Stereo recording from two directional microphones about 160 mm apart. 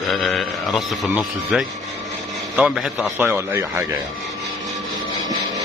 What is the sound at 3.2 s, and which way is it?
Speech, 15° right (ahead or behind).